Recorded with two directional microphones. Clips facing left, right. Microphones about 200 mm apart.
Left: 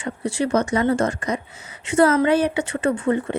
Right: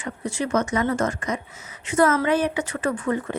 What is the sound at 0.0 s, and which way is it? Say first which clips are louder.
A woman's voice: left 4 dB; 30° left (ahead or behind).